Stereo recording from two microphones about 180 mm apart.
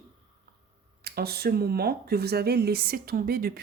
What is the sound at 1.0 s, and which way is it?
Speech, 60° right (ahead or behind).